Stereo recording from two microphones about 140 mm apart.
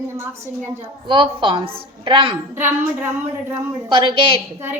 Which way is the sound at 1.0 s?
35° right (ahead or behind).